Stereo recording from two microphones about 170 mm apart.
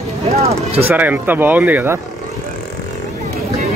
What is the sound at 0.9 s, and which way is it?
Speech, 10° right (ahead or behind).